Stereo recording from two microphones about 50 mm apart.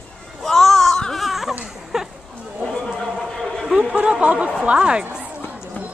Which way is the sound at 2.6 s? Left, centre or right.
Centre.